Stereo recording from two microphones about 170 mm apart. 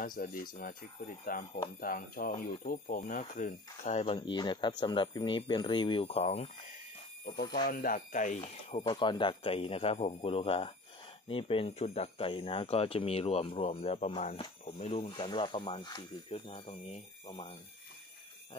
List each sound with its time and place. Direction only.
0.0 s speech: 55° left (ahead or behind); by 6.5 s 40° left (ahead or behind)
7.3 s speech: 25° left (ahead or behind)
7.6 s speech: 55° left (ahead or behind)
8.8 s speech: 25° left (ahead or behind)